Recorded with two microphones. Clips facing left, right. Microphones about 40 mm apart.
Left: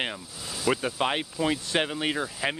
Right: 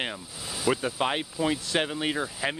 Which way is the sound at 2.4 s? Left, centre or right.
Centre.